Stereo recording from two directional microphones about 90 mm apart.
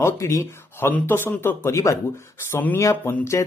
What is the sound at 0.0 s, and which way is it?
Speech, 30° left (ahead or behind).